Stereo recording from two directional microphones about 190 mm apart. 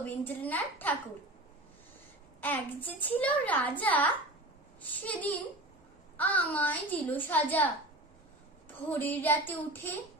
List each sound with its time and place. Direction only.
0.0 s a child's voice: 10° left (ahead or behind)
2.4 s a child's voice: 10° left (ahead or behind)